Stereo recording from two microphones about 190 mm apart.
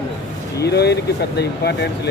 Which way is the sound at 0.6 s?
60° left (ahead or behind).